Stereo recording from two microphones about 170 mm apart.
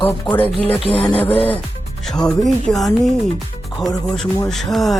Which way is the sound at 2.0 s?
Centre (ahead or behind).